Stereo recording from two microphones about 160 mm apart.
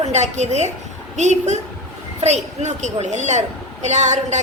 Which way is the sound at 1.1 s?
45° right (ahead or behind).